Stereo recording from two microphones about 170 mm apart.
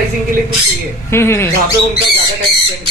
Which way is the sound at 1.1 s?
15° left (ahead or behind).